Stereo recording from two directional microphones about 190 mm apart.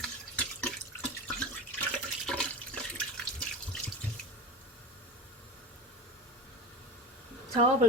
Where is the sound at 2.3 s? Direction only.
5° left (ahead or behind).